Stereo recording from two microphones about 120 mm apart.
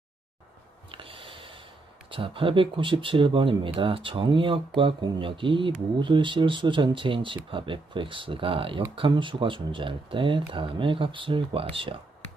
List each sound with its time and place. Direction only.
0.9 s snort: 50° right (ahead or behind)
2.0 s speech: 45° right (ahead or behind)